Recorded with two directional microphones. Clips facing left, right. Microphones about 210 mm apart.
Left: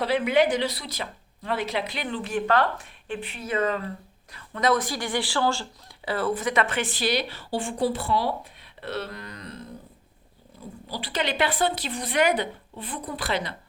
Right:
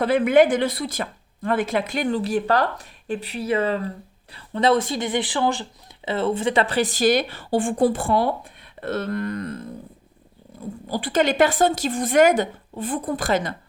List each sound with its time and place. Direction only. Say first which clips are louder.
0.0 s speech: right 6 dB; 50° right (ahead or behind)
10.8 s speech: right 8 dB; 50° right (ahead or behind)